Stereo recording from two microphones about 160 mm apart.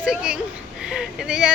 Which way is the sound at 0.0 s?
5° right (ahead or behind).